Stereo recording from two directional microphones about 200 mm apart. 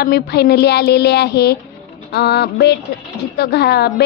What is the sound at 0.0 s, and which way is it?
A woman's voice, 55° left (ahead or behind).